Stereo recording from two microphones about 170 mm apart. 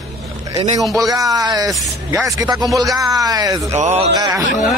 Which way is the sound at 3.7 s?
40° right (ahead or behind).